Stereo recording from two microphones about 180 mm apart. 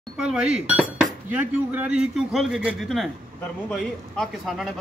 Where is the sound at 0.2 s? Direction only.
5° right (ahead or behind).